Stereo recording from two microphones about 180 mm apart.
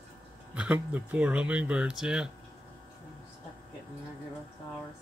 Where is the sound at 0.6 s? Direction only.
5° right (ahead or behind).